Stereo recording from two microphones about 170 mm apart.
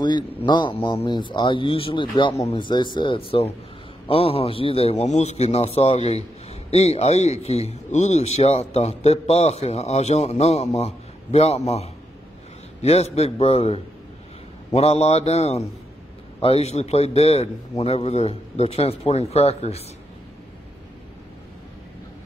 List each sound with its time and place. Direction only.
0.0 s a man's voice: 25° left (ahead or behind)